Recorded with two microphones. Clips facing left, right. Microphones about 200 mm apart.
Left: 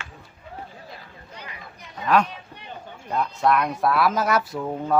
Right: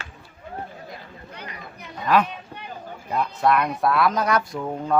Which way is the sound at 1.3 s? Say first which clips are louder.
Right 2 dB; 60° right (ahead or behind).